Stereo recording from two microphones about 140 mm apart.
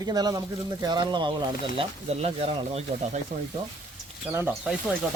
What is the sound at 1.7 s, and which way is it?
Speech, 50° right (ahead or behind).